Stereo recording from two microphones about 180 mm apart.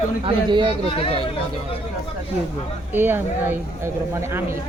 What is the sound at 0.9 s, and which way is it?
Speech, 30° left (ahead or behind).